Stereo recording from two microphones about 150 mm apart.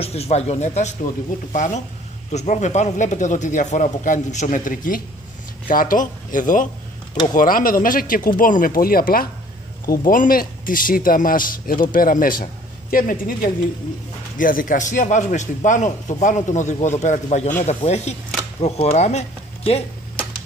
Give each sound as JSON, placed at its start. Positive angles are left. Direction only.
{"t": 0.0, "sound": "a man's voice", "side_deg": 45}